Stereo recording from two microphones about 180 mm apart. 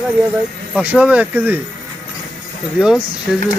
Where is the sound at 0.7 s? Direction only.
10° right (ahead or behind).